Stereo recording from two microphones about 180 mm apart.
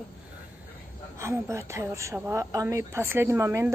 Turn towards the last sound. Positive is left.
turn(degrees=-15)  # may be behind; listen again after turning